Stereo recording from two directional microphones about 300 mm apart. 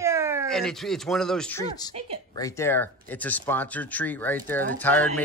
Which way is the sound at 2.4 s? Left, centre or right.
Centre.